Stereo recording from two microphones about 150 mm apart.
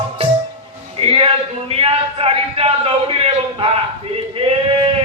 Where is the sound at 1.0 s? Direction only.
40° right (ahead or behind).